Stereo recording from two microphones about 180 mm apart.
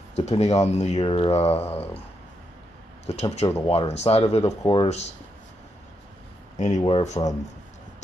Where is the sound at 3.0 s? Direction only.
35° left (ahead or behind).